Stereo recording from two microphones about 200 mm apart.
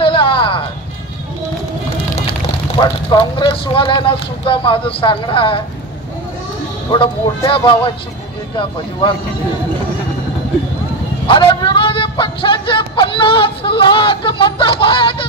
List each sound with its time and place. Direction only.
0.0 s a sound: 25° left (ahead or behind)
2.7 s a man's voice: 25° left (ahead or behind)
6.9 s a man's voice: 25° left (ahead or behind)
11.2 s a man's voice: 25° left (ahead or behind)